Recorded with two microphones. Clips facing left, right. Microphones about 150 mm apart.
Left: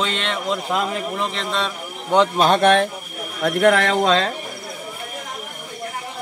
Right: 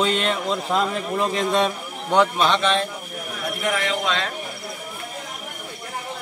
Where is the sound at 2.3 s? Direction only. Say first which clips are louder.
Left 5 dB; 45° left (ahead or behind).